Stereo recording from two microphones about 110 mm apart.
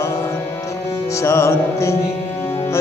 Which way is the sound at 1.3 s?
25° left (ahead or behind).